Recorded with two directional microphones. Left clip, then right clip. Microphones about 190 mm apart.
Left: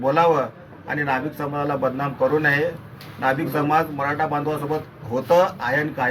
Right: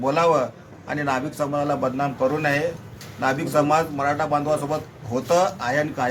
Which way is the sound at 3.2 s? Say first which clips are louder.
Right 1 dB; 15° right (ahead or behind).